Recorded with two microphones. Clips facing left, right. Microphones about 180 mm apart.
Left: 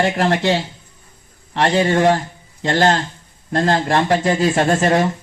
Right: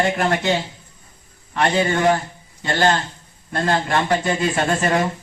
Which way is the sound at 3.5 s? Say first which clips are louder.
Left 3 dB; 40° left (ahead or behind).